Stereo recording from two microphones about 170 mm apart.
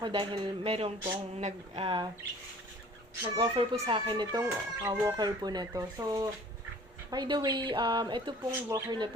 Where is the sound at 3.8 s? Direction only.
30° right (ahead or behind).